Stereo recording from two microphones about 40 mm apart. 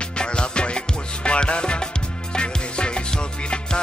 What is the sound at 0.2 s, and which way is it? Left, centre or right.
Music, left.